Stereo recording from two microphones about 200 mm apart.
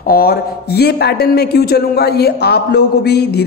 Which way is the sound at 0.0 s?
50° left (ahead or behind).